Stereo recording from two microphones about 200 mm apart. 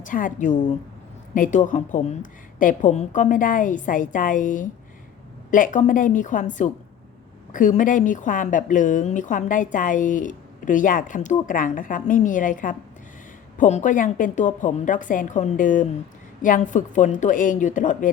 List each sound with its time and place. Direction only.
0.0 s a woman's voice: 40° left (ahead or behind)